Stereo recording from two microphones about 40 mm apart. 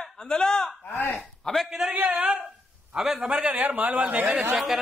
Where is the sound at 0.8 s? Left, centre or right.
Left.